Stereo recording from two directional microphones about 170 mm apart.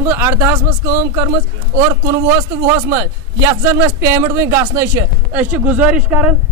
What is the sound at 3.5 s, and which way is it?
Speech, 15° right (ahead or behind).